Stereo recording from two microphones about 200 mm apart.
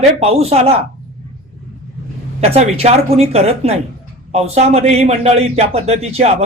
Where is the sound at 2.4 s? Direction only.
30° right (ahead or behind).